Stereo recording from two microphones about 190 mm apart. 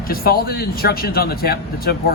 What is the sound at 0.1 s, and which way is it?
Speech, 50° left (ahead or behind).